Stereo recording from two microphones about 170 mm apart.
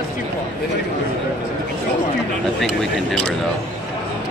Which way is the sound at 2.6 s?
Centre (ahead or behind).